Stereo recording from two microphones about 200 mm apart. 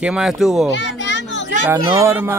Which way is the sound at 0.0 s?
5° right (ahead or behind).